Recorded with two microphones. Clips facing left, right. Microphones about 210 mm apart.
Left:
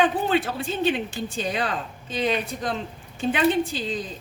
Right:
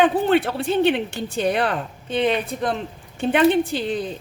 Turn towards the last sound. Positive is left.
turn(degrees=-65)  # may be behind; listen again after turning